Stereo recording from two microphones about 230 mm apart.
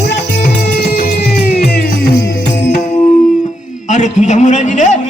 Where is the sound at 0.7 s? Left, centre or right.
Left.